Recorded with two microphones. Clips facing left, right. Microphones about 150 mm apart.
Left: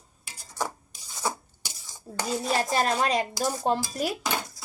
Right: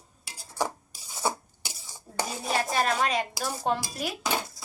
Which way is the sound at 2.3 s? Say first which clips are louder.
Left 9 dB; 5° right (ahead or behind).